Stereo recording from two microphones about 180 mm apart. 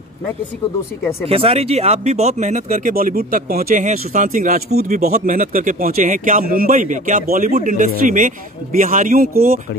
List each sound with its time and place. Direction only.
1.2 s speech: 35° right (ahead or behind); by 9.6 s 55° right (ahead or behind)